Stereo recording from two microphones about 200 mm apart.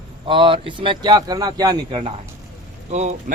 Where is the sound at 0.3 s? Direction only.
25° right (ahead or behind).